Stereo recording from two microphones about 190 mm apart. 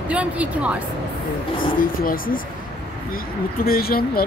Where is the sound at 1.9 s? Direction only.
50° left (ahead or behind).